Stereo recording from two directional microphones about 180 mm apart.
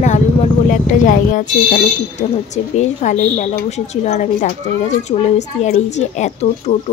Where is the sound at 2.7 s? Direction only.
40° left (ahead or behind).